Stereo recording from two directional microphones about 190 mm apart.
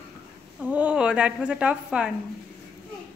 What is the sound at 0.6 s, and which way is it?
A woman's voice, 5° right (ahead or behind).